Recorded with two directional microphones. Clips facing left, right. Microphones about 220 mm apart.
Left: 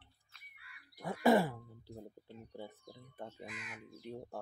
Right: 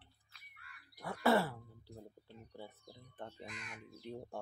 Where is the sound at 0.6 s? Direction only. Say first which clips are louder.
Left 2 dB; 15° left (ahead or behind).